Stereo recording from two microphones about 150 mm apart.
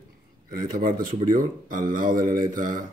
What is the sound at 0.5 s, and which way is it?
Speech, 70° right (ahead or behind).